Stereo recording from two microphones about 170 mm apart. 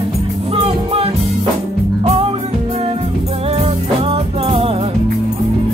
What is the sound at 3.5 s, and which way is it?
Music, 35° right (ahead or behind).